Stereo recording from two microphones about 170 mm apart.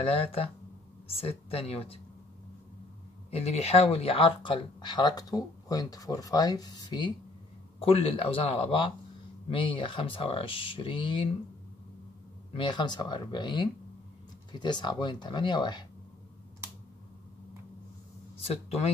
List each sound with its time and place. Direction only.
0.0 s speech: 35° left (ahead or behind)
3.3 s speech: 35° left (ahead or behind)
12.5 s speech: 25° left (ahead or behind)
18.4 s speech: 35° left (ahead or behind)